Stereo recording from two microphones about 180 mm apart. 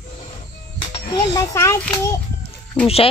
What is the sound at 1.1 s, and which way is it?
A child's voice, 15° left (ahead or behind).